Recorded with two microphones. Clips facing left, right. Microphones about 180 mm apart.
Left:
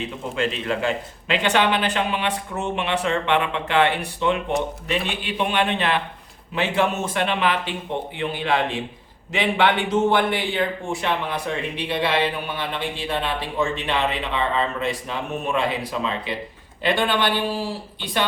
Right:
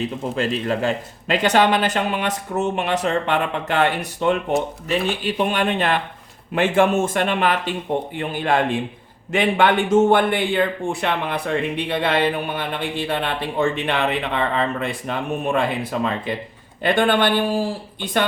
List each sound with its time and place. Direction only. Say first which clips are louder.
0.3 s a man's voice: right 1 dB; 40° right (ahead or behind)